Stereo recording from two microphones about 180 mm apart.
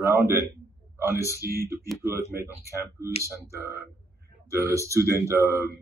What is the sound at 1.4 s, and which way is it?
Speech, 55° right (ahead or behind).